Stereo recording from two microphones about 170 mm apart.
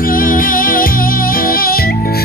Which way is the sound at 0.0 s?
55° left (ahead or behind).